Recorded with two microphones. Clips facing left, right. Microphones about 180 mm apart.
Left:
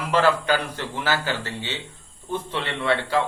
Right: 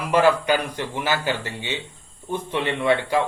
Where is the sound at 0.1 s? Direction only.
15° right (ahead or behind).